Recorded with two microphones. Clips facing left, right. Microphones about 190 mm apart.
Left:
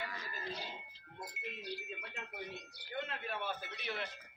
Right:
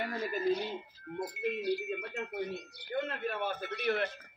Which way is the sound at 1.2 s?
55° right (ahead or behind).